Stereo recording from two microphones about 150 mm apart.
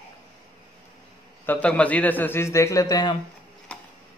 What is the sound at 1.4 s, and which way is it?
A man's voice, 10° left (ahead or behind).